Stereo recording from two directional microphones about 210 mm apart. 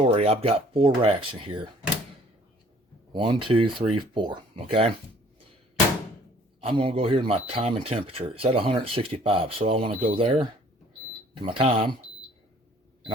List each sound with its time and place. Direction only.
0.0 s speech: 30° right (ahead or behind)
3.1 s speech: 25° right (ahead or behind)
6.6 s speech: 25° right (ahead or behind)
11.4 s speech: 25° right (ahead or behind)